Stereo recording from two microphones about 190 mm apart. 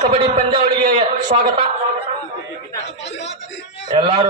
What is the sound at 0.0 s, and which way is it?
A man's voice, 35° right (ahead or behind).